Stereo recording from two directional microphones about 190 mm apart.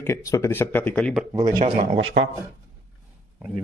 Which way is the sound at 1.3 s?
20° right (ahead or behind).